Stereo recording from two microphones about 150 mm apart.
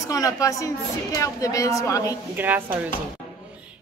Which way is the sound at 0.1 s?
20° left (ahead or behind).